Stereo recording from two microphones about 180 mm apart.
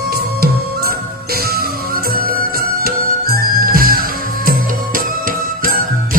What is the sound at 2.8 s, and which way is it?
Music, 55° right (ahead or behind).